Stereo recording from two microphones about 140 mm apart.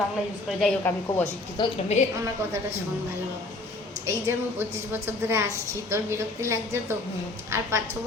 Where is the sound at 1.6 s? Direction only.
30° left (ahead or behind).